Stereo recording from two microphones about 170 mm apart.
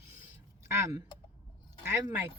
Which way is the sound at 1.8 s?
15° right (ahead or behind).